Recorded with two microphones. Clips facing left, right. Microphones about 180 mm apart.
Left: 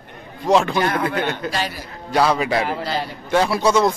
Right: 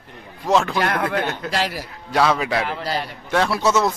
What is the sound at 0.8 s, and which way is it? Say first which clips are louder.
Speech: left 1 dB; 70° right (ahead or behind).